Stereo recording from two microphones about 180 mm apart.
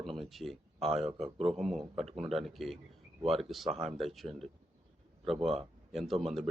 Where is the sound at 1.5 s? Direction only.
Centre (ahead or behind).